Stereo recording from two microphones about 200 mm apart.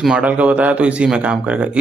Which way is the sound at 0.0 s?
5° right (ahead or behind).